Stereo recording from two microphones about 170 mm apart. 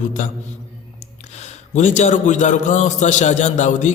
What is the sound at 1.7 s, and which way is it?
A man's voice, 45° left (ahead or behind).